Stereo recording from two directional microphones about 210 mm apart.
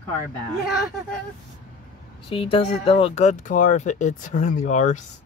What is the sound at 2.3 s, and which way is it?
Speech, 25° left (ahead or behind).